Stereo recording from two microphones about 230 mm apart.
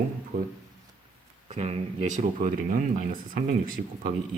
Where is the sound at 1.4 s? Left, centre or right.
Right.